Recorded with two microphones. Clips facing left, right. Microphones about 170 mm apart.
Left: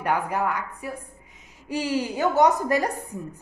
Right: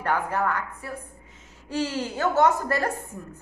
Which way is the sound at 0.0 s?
15° left (ahead or behind).